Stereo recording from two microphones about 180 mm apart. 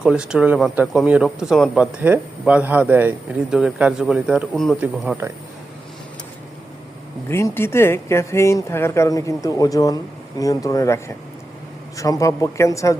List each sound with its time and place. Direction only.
0.0 s speech: 5° right (ahead or behind)
4.8 s speech: 10° right (ahead or behind)
7.3 s speech: 15° left (ahead or behind)